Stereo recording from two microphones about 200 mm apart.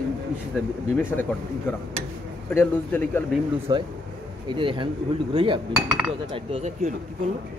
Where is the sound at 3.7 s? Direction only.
25° right (ahead or behind).